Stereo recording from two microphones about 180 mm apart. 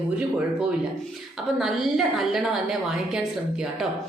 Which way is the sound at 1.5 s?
Centre (ahead or behind).